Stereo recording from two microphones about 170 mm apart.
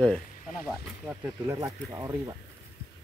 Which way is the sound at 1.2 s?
20° right (ahead or behind).